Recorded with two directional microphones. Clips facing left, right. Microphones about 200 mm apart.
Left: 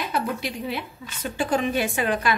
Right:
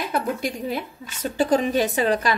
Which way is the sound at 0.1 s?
45° right (ahead or behind).